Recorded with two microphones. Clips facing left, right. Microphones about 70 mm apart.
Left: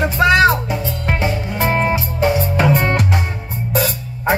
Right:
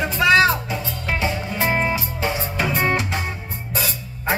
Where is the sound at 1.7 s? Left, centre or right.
Left.